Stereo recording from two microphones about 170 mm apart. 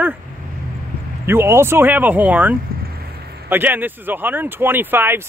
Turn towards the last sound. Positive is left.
turn(degrees=-15)  # may be behind; listen again after turning